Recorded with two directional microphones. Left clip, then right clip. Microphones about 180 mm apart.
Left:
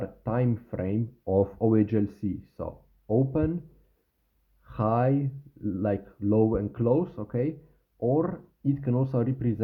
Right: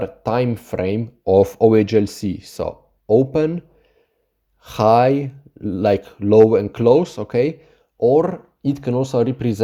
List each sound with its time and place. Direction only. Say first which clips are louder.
0.0 s speech: right 10 dB; 35° right (ahead or behind)
4.6 s speech: right 13 dB; 35° right (ahead or behind)